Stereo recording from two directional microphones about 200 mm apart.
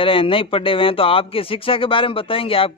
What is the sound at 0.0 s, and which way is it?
Speech, 25° left (ahead or behind).